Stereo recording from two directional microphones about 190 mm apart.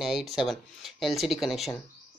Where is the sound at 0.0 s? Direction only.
Centre (ahead or behind).